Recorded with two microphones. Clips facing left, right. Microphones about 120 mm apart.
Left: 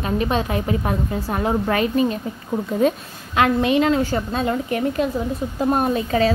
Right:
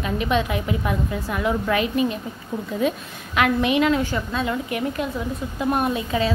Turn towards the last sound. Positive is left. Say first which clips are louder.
# left 4 dB
turn(degrees=40)  # may be behind; listen again after turning